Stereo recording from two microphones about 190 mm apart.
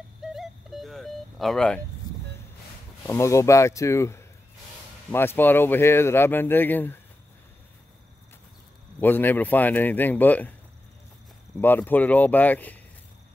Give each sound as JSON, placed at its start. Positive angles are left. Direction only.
{"t": 0.2, "sound": "a sound", "side_deg": 0}
{"t": 3.1, "sound": "speech", "side_deg": 15}
{"t": 9.0, "sound": "speech", "side_deg": 10}
{"t": 11.6, "sound": "speech", "side_deg": 10}